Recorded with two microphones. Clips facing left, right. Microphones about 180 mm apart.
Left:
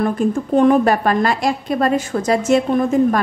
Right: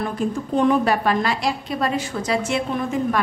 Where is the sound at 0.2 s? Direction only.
50° left (ahead or behind).